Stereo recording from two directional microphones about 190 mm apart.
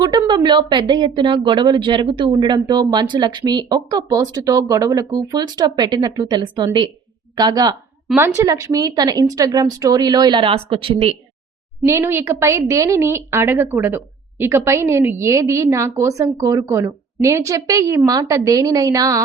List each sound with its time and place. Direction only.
0.0 s speech: 20° right (ahead or behind)
11.8 s a woman's voice: 15° right (ahead or behind)